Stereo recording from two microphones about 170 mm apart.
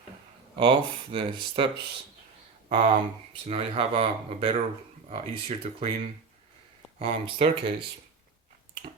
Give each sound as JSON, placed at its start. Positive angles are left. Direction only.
{"t": 1.1, "sound": "speech", "side_deg": -30}
{"t": 7.0, "sound": "speech", "side_deg": -35}